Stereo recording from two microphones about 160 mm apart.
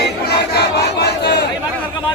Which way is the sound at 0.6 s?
90° left.